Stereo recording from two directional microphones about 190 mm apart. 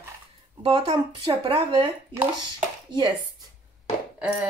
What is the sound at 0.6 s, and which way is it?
Speech, 30° right (ahead or behind).